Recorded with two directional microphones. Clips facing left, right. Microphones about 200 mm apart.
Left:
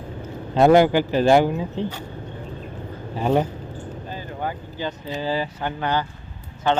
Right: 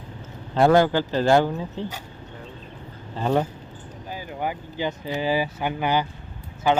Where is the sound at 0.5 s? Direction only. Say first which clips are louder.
Left 3 dB; 20° left (ahead or behind).